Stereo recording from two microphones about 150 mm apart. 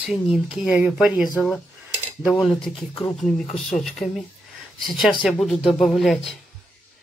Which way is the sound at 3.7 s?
5° left (ahead or behind).